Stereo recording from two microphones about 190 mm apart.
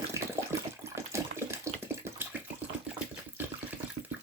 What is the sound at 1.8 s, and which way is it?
Bathtub, 10° right (ahead or behind).